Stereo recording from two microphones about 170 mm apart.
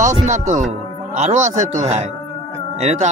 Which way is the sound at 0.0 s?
45° right (ahead or behind).